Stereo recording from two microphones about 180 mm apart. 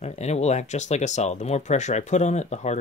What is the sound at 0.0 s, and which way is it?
Speech, 40° left (ahead or behind).